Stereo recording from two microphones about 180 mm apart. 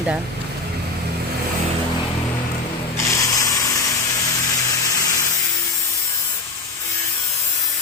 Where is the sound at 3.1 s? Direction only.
15° left (ahead or behind).